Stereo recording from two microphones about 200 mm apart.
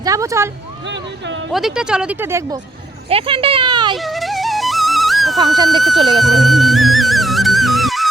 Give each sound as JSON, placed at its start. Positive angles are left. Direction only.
{"t": 0.0, "sound": "speech", "side_deg": -15}
{"t": 0.9, "sound": "speech", "side_deg": -65}
{"t": 1.5, "sound": "speech", "side_deg": -5}
{"t": 3.1, "sound": "speech", "side_deg": -25}
{"t": 3.9, "sound": "music", "side_deg": 0}